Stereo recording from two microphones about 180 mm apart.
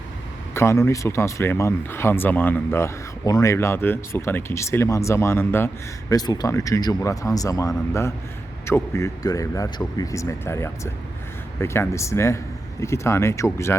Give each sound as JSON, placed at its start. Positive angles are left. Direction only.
{"t": 0.5, "sound": "speech", "side_deg": 15}